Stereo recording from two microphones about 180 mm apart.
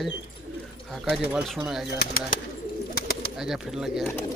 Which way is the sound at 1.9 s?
55° left (ahead or behind).